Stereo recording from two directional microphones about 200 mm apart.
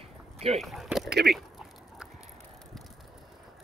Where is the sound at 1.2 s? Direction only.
Centre (ahead or behind).